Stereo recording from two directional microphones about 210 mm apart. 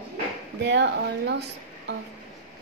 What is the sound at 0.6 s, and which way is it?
Speech, 55° right (ahead or behind).